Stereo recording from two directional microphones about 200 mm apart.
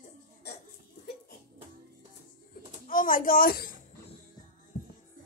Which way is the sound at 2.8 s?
45° left (ahead or behind).